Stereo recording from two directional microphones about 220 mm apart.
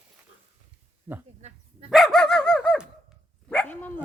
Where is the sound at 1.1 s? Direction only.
15° right (ahead or behind).